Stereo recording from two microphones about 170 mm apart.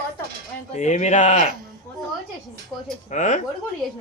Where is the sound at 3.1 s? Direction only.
45° left (ahead or behind).